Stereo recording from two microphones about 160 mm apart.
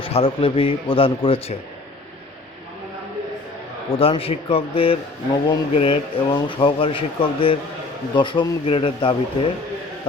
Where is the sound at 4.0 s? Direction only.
35° left (ahead or behind).